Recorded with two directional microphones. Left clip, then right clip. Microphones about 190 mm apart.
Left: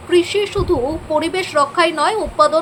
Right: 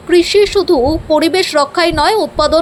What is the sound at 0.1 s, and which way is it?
Speech, 20° right (ahead or behind).